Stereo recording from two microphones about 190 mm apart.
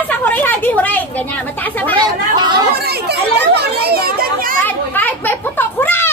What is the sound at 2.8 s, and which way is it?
A child's voice, 60° right (ahead or behind).